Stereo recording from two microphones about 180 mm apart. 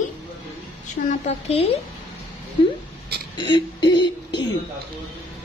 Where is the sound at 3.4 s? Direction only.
25° left (ahead or behind).